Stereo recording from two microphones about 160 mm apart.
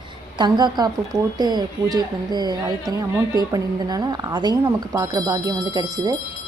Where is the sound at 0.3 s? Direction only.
25° right (ahead or behind).